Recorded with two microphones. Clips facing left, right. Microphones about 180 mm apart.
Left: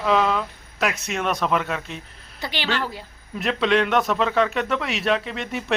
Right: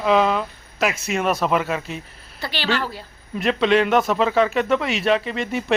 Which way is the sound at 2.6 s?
10° right (ahead or behind).